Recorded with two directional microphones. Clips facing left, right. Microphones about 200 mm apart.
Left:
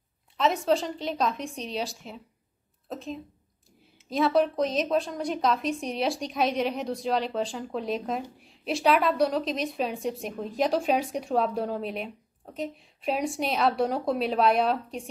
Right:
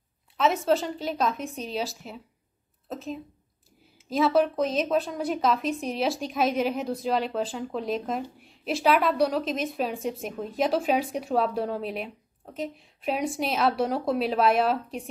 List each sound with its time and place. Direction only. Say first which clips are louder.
0.4 s a woman's voice: right 1 dB; centre (ahead or behind)